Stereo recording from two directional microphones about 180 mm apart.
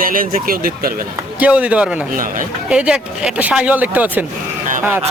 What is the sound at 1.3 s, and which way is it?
Speech, 10° right (ahead or behind).